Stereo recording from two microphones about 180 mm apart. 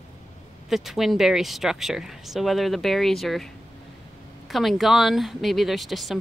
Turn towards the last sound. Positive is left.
turn(degrees=0)  # may be behind; listen again after turning